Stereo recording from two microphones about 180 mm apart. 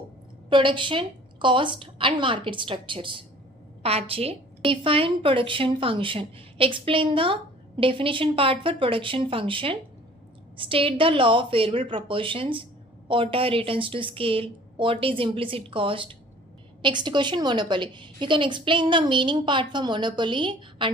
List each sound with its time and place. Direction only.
0.5 s a woman's voice: 25° right (ahead or behind)